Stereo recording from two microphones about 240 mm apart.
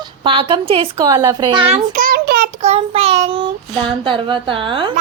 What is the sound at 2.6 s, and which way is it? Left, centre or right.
Child singing, right.